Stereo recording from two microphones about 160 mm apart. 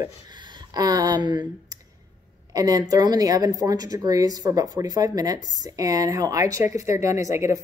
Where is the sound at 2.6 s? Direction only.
25° right (ahead or behind).